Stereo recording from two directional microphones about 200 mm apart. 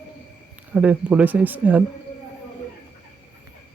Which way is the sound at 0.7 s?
5° right (ahead or behind).